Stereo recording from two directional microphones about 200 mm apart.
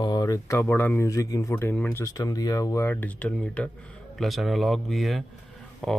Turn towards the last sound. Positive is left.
turn(degrees=0)  # may be behind; listen again after turning